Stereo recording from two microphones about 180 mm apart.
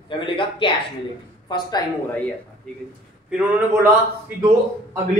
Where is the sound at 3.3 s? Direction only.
5° right (ahead or behind).